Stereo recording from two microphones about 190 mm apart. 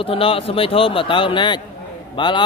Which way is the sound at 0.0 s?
30° left (ahead or behind).